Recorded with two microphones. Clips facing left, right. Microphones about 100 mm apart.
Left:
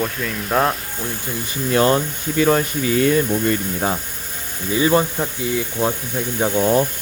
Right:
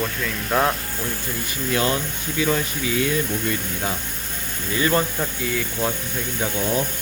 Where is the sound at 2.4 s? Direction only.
50° left (ahead or behind).